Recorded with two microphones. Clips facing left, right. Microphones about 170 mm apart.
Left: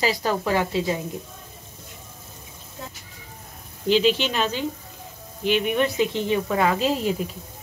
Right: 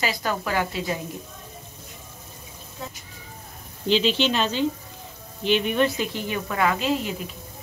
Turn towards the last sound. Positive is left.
turn(degrees=35)  # may be behind; listen again after turning